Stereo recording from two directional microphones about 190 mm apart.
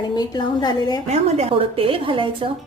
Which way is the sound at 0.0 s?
25° left (ahead or behind).